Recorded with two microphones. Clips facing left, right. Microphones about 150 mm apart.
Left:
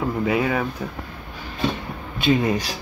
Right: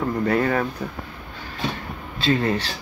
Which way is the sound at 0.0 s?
5° left (ahead or behind).